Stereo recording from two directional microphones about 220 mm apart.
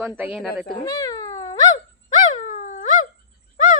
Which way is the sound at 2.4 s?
35° left (ahead or behind).